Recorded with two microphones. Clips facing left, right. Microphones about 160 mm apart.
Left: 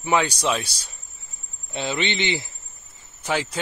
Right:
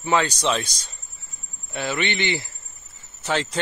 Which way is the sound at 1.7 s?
20° left (ahead or behind).